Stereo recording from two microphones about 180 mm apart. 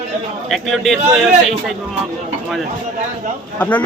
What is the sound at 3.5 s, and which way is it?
Speech, 10° left (ahead or behind).